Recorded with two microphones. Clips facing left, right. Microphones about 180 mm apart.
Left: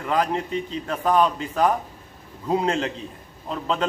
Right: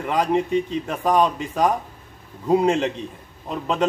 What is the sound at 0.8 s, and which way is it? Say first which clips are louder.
A man's voice: left 2 dB; 15° right (ahead or behind).